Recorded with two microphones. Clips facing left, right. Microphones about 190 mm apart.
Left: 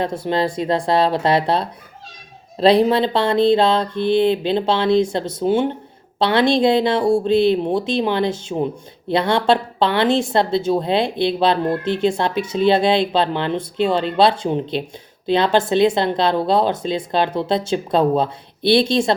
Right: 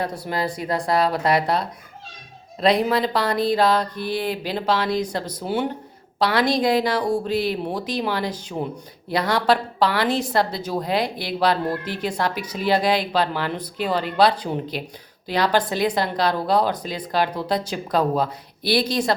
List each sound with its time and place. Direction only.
0.0 s speech: 25° left (ahead or behind)